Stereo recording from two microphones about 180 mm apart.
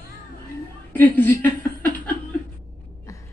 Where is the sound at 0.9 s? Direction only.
10° left (ahead or behind).